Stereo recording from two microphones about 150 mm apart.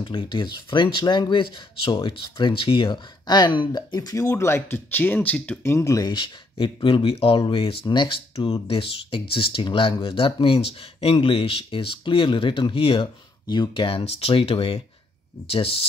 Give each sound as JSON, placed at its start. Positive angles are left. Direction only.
{"t": 0.0, "sound": "speech", "side_deg": 35}